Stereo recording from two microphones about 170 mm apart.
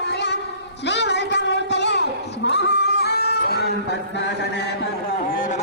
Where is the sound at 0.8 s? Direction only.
90° left.